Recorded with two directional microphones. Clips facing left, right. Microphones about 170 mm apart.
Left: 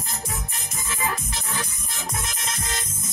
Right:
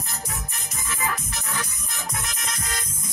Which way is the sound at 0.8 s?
30° left (ahead or behind).